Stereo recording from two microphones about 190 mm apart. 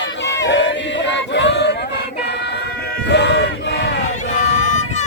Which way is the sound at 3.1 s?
65° left (ahead or behind).